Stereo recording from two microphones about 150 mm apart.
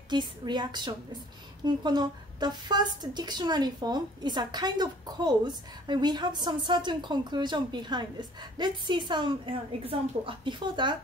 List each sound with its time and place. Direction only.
0.1 s a woman's voice: 30° right (ahead or behind)